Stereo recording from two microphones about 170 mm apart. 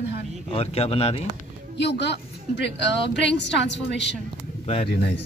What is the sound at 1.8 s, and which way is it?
A woman's voice, 90° left.